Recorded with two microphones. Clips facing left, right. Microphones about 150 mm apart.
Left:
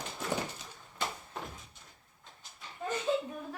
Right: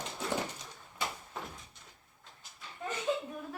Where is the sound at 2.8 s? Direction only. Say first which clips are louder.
Left 3 dB; centre (ahead or behind).